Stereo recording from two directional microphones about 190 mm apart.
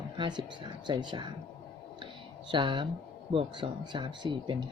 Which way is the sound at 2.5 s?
25° right (ahead or behind).